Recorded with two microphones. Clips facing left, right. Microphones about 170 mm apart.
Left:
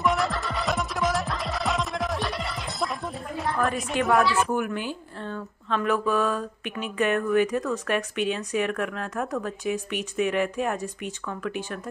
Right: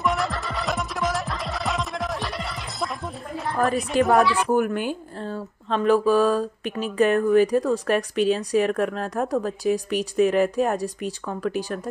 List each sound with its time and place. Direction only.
0.0 s music: centre (ahead or behind)
3.6 s speech: 40° right (ahead or behind)
4.0 s speech: centre (ahead or behind)
4.5 s speech: 40° right (ahead or behind)
5.2 s speech: 35° right (ahead or behind)